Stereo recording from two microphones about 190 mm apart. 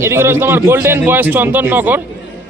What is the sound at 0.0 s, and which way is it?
A man's voice, 15° right (ahead or behind).